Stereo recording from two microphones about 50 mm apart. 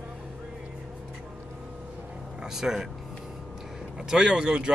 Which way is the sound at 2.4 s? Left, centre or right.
Centre.